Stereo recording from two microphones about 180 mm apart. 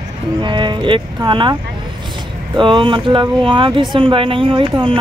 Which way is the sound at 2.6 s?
25° right (ahead or behind).